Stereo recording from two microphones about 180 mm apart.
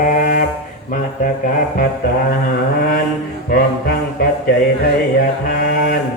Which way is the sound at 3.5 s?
55° left (ahead or behind).